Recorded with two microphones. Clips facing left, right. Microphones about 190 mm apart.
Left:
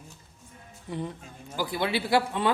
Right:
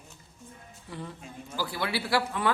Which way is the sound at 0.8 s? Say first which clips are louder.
Left 6 dB; 20° left (ahead or behind).